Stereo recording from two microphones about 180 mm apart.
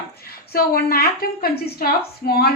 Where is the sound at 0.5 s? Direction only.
55° left (ahead or behind).